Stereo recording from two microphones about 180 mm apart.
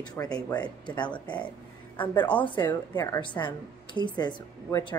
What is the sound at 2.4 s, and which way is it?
A woman's voice, 25° left (ahead or behind).